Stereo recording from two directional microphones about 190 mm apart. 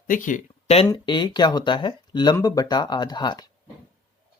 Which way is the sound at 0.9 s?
25° left (ahead or behind).